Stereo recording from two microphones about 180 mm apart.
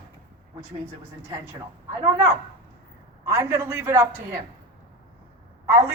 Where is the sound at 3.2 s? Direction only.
15° right (ahead or behind).